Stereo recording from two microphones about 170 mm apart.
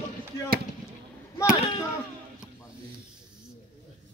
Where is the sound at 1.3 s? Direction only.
20° left (ahead or behind).